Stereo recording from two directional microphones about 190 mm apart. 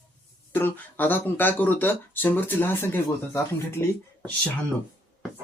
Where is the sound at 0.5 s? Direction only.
10° left (ahead or behind).